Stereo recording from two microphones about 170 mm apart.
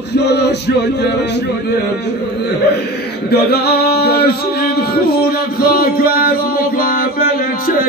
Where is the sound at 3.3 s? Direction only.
70° left (ahead or behind).